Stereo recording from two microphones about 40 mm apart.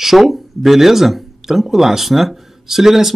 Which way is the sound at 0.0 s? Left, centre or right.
Centre.